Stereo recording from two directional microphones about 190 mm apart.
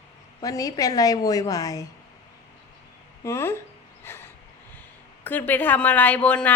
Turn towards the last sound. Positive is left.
turn(degrees=5)  # may be behind; listen again after turning